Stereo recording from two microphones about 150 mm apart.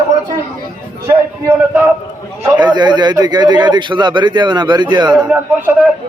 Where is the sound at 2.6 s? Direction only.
30° right (ahead or behind).